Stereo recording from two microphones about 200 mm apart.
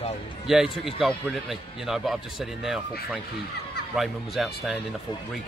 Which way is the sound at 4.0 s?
Centre (ahead or behind).